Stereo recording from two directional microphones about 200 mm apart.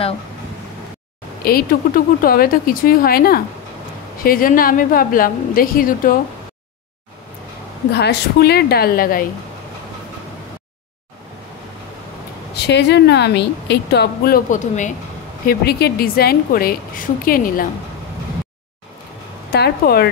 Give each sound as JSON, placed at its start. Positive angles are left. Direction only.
{"t": 1.4, "sound": "a woman's voice", "side_deg": 45}
{"t": 7.9, "sound": "a woman's voice", "side_deg": 55}
{"t": 12.5, "sound": "a woman's voice", "side_deg": 60}
{"t": 19.5, "sound": "a woman's voice", "side_deg": 50}